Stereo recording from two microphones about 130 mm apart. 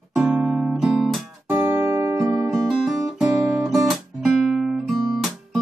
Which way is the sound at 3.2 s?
Centre (ahead or behind).